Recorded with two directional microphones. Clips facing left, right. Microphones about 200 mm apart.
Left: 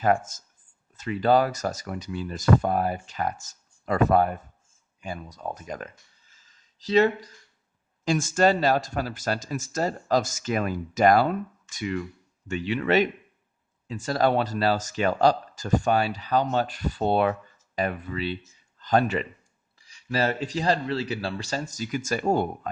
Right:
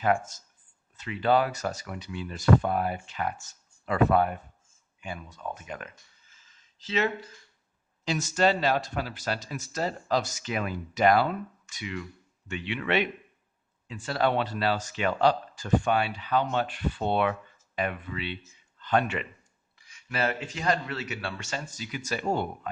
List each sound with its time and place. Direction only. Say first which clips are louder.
0.0 s speech: left 3 dB; 45° left (ahead or behind)
8.0 s a man's voice: left 4 dB; 50° left (ahead or behind)